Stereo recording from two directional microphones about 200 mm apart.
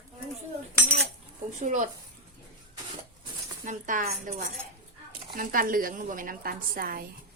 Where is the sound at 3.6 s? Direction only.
40° right (ahead or behind).